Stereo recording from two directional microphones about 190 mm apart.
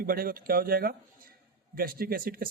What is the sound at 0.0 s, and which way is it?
Speech, 50° right (ahead or behind).